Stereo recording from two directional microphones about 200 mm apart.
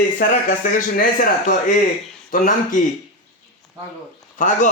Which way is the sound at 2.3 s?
40° left (ahead or behind).